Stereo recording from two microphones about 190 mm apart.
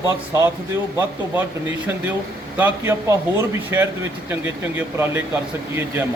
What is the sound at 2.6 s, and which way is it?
Speech, 10° right (ahead or behind).